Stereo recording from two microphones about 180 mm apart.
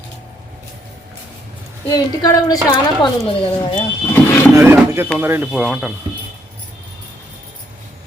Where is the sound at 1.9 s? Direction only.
20° left (ahead or behind).